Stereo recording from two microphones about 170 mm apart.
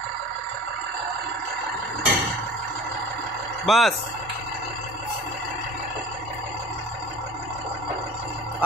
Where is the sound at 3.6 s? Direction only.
Centre (ahead or behind).